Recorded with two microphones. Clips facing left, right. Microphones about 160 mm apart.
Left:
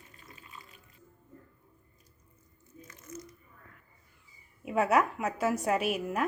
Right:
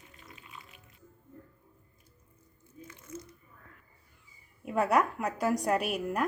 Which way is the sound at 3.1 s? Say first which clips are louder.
Right 1 dB; 30° right (ahead or behind).